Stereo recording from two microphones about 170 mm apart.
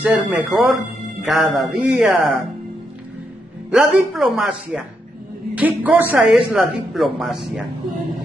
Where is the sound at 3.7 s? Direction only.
5° right (ahead or behind).